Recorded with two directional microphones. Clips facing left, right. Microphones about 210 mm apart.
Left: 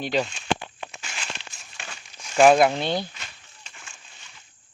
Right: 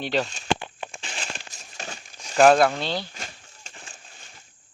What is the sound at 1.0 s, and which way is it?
Crumpling, 35° right (ahead or behind).